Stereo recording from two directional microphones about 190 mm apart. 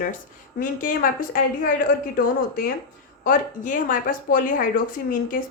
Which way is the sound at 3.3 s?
45° left (ahead or behind).